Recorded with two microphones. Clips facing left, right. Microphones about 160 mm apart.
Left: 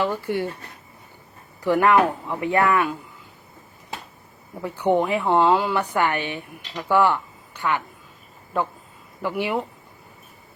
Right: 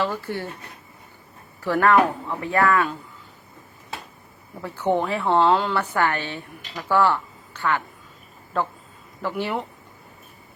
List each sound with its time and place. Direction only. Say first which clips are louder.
0.0 s a woman's voice: left 3 dB; 15° left (ahead or behind)
1.6 s a woman's voice: left 1 dB; 15° left (ahead or behind)
4.6 s a woman's voice: left 2 dB; 15° left (ahead or behind)